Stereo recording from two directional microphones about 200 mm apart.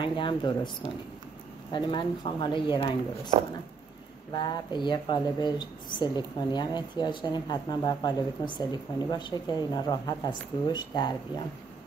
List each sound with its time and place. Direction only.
0.0 s speech: 25° left (ahead or behind)
1.7 s speech: 25° left (ahead or behind)
4.3 s speech: 20° left (ahead or behind)